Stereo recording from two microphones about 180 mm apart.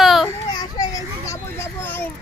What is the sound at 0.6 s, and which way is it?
Children playing, 20° left (ahead or behind).